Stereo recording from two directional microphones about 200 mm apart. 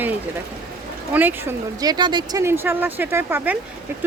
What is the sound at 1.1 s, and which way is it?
Speech, 10° right (ahead or behind).